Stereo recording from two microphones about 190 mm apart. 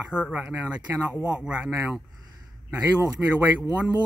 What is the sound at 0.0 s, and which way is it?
Speech, 5° right (ahead or behind).